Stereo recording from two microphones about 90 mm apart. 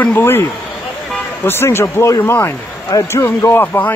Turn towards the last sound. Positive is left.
turn(degrees=20)  # may be behind; listen again after turning